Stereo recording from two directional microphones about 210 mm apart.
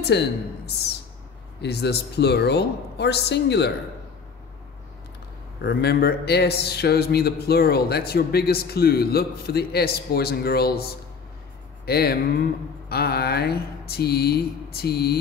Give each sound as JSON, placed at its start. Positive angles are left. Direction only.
{"t": 0.0, "sound": "a man's voice", "side_deg": 55}
{"t": 1.6, "sound": "a man's voice", "side_deg": 50}
{"t": 5.6, "sound": "a man's voice", "side_deg": 50}